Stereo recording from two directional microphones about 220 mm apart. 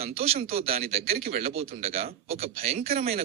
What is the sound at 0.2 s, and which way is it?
Speech, 25° right (ahead or behind).